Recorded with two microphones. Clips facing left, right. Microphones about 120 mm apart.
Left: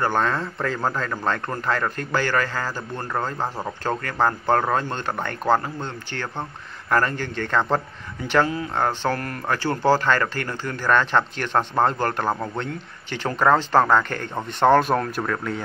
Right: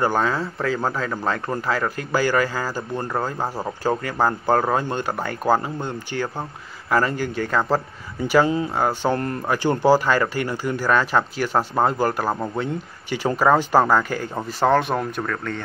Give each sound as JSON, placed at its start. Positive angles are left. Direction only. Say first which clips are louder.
{"t": 0.0, "sound": "a man's voice", "louder": "right 1 dB", "side_deg": -5}
{"t": 9.1, "sound": "speech", "louder": "right 4 dB", "side_deg": -25}
{"t": 9.5, "sound": "a man's voice", "louder": "right 3 dB", "side_deg": -15}